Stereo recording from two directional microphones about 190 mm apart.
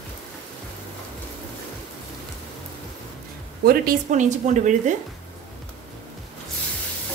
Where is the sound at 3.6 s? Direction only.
50° right (ahead or behind).